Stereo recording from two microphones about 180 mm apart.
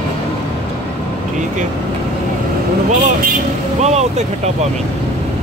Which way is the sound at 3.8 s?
40° right (ahead or behind).